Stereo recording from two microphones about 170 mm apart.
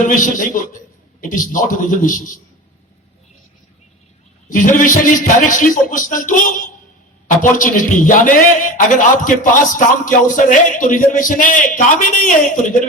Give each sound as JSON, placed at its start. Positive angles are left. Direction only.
{"t": 0.0, "sound": "a man's voice", "side_deg": 50}
{"t": 4.4, "sound": "a man's voice", "side_deg": 50}